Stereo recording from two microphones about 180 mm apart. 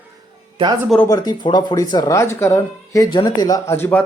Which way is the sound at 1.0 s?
20° left (ahead or behind).